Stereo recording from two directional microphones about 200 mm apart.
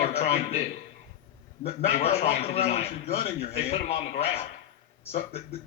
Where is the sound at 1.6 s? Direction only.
30° left (ahead or behind).